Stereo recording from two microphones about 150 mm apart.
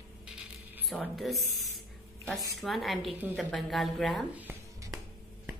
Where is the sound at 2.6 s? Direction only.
Centre (ahead or behind).